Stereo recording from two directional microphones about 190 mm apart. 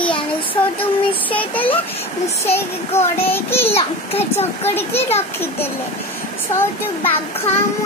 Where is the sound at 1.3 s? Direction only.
10° left (ahead or behind).